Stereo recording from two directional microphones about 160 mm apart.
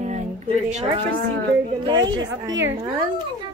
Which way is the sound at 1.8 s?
30° right (ahead or behind).